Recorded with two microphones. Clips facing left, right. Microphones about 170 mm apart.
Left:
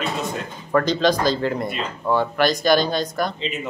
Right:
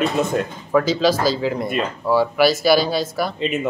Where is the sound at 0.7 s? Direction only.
5° right (ahead or behind).